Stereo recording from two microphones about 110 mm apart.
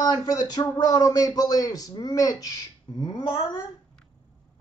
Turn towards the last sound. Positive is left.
turn(degrees=45)  # may be behind; listen again after turning